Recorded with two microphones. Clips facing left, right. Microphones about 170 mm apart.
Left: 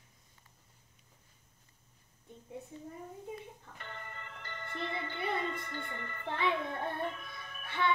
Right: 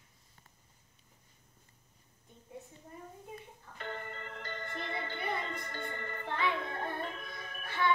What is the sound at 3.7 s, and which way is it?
Music, 50° right (ahead or behind).